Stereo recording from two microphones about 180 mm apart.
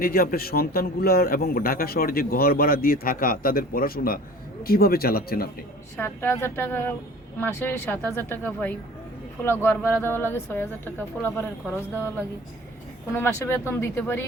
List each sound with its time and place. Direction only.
0.0 s a man's voice: 55° left (ahead or behind)
6.0 s a woman's voice: 10° left (ahead or behind)